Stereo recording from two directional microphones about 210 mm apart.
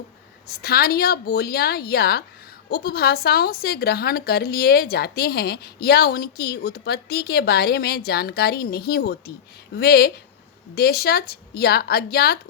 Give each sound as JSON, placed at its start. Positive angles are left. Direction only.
{"t": 0.4, "sound": "a woman's voice", "side_deg": 50}